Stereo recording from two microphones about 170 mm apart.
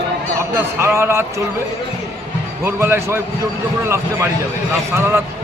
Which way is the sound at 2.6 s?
15° right (ahead or behind).